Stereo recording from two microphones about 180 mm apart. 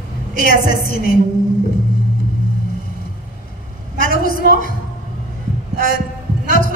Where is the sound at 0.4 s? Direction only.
55° left (ahead or behind).